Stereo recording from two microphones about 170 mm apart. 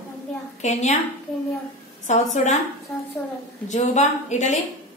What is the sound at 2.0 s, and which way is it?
Speech, 45° left (ahead or behind).